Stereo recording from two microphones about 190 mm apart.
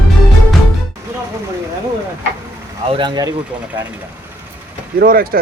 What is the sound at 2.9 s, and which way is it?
Speech, 25° right (ahead or behind).